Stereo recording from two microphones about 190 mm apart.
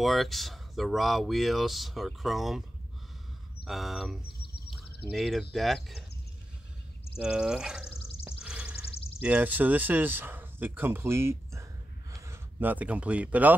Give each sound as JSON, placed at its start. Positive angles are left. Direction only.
{"t": 0.0, "sound": "speech", "side_deg": 0}
{"t": 3.6, "sound": "speech", "side_deg": 0}
{"t": 7.2, "sound": "speech", "side_deg": -5}
{"t": 8.4, "sound": "a sound", "side_deg": -5}
{"t": 8.9, "sound": "a sound", "side_deg": 30}
{"t": 9.2, "sound": "speech", "side_deg": -10}